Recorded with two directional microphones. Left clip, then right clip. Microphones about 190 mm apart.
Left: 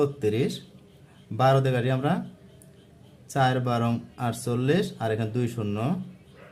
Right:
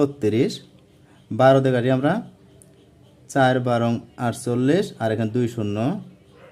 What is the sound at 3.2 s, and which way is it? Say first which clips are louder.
Speech: right 6 dB; 30° right (ahead or behind).